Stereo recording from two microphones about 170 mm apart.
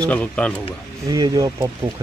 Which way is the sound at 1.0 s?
20° right (ahead or behind).